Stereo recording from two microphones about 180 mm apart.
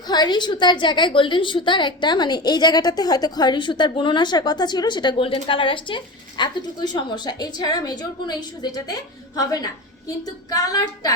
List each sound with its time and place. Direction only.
0.1 s a woman's voice: 25° left (ahead or behind)